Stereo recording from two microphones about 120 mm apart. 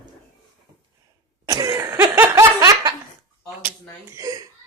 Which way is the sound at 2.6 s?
30° right (ahead or behind).